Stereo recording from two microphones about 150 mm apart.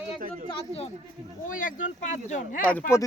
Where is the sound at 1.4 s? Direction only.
65° left (ahead or behind).